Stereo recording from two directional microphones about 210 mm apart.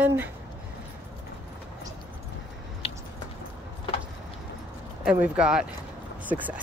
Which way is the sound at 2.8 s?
30° left (ahead or behind).